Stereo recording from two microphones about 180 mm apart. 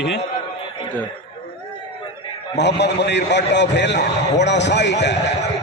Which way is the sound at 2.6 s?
70° left (ahead or behind).